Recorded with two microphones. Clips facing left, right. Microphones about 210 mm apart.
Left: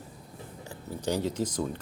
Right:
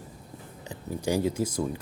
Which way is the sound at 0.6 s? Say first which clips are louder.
Right 2 dB; 15° right (ahead or behind).